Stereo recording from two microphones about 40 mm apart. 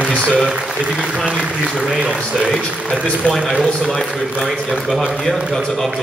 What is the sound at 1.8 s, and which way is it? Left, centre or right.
Speech, right.